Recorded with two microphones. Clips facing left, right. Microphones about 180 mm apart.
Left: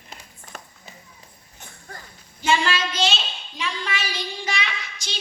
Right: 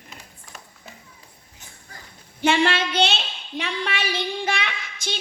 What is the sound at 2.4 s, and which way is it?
A woman's voice, 60° right (ahead or behind).